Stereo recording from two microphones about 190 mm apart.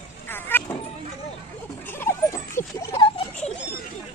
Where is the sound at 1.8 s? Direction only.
10° left (ahead or behind).